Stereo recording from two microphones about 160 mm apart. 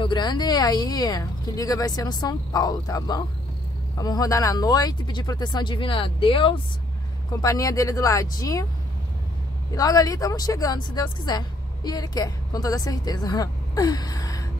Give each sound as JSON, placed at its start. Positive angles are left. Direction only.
{"t": 0.0, "sound": "speech", "side_deg": 30}
{"t": 7.4, "sound": "speech", "side_deg": 20}
{"t": 9.8, "sound": "speech", "side_deg": 25}